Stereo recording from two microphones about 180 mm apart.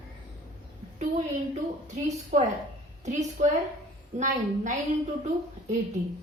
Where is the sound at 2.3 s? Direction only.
35° right (ahead or behind).